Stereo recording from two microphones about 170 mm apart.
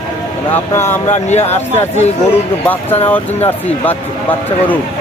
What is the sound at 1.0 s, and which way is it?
Speech, 40° left (ahead or behind).